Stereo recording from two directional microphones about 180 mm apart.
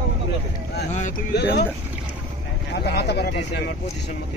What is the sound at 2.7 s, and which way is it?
Speech, 65° left (ahead or behind).